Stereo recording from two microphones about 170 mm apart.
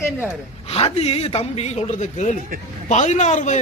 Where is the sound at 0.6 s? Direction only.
35° left (ahead or behind).